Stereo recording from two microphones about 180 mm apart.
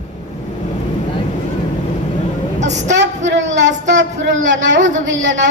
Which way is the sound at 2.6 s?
40° right (ahead or behind).